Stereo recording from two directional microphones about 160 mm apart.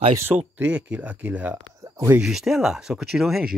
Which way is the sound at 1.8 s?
20° right (ahead or behind).